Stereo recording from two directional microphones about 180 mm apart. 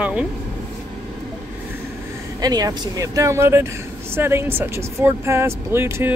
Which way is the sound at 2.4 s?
20° right (ahead or behind).